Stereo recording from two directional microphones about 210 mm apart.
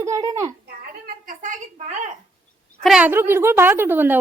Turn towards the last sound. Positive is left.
turn(degrees=-10)  # may be behind; listen again after turning